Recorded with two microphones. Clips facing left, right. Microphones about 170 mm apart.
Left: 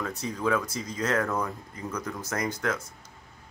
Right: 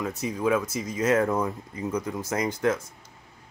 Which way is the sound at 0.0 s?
20° right (ahead or behind).